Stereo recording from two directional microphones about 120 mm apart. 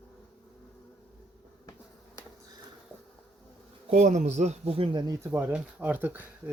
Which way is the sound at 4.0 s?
70° right (ahead or behind).